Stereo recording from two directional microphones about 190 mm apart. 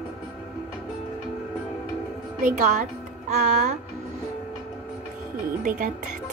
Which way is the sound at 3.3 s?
40° right (ahead or behind).